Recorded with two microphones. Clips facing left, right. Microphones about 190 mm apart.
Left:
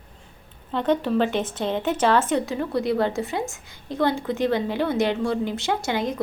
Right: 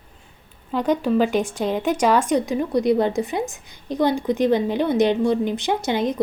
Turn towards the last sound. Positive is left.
turn(degrees=-20)  # may be behind; listen again after turning